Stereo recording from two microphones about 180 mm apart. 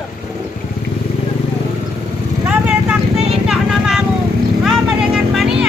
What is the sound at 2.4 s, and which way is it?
Vehicle, 5° right (ahead or behind).